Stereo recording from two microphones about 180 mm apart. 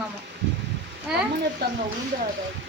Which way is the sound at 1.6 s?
65° right (ahead or behind).